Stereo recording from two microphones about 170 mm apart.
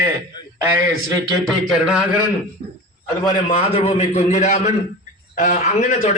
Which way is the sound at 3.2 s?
30° left (ahead or behind).